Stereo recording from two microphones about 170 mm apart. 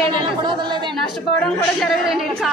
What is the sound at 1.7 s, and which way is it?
Speech, centre (ahead or behind).